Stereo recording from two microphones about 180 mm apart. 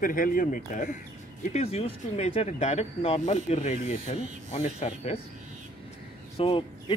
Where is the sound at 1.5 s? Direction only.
35° left (ahead or behind).